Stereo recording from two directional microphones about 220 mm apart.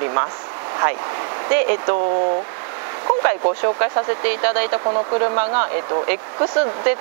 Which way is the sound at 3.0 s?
25° right (ahead or behind).